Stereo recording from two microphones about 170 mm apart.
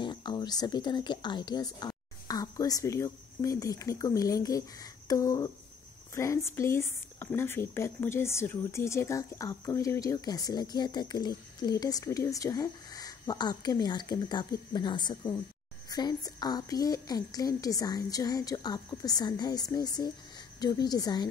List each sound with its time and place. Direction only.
0.0 s speech: 25° left (ahead or behind)